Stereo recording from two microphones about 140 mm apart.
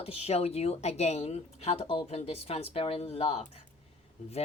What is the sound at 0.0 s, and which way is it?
Speech, 50° left (ahead or behind).